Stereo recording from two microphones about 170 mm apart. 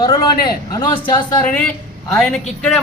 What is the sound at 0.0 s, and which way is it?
A man's voice, 25° left (ahead or behind).